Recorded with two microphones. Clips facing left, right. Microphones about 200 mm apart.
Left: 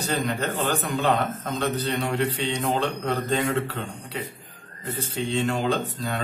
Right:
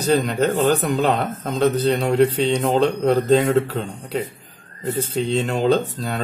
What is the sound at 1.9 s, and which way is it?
Speech, 40° right (ahead or behind).